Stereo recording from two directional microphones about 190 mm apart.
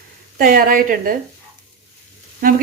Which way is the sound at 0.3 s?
50° right (ahead or behind).